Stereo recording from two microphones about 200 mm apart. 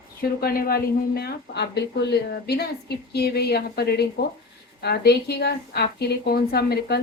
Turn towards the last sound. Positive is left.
turn(degrees=55)  # may be behind; listen again after turning